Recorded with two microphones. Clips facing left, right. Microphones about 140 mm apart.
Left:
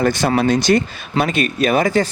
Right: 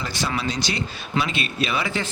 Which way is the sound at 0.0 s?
50° left (ahead or behind).